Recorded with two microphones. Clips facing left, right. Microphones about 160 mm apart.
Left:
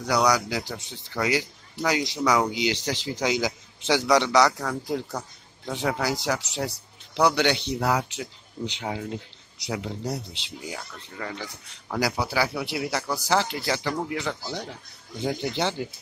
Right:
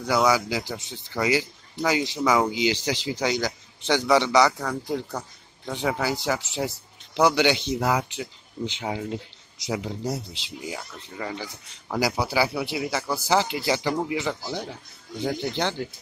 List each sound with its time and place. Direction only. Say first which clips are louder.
0.0 s speech: right 1 dB; 5° right (ahead or behind)
3.3 s speech: left 2 dB; 5° left (ahead or behind)